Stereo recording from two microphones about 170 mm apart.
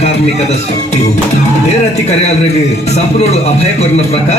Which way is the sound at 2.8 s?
40° left (ahead or behind).